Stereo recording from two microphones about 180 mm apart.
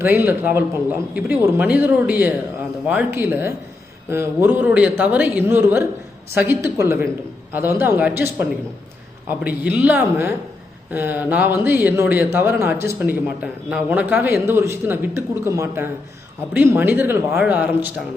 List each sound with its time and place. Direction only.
0.0 s speech: 10° right (ahead or behind)
9.7 s speech: 10° right (ahead or behind)